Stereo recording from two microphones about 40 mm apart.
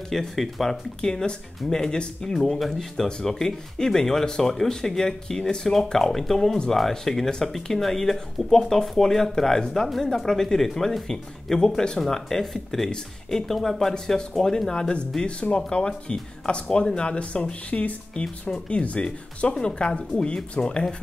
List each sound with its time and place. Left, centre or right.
0.1 s speech: centre
2.3 s speech: centre; by 20.9 s left